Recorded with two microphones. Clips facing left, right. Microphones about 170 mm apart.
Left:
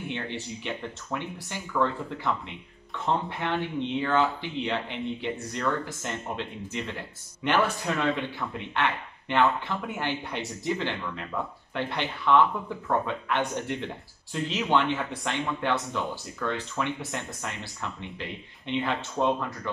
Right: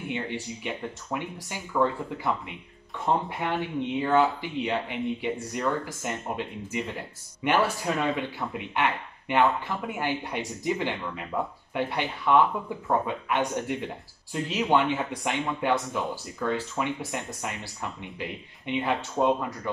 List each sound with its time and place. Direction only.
0.1 s speech: 10° right (ahead or behind)